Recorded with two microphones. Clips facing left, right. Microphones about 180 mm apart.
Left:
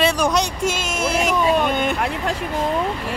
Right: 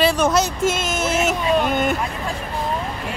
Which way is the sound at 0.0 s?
5° right (ahead or behind).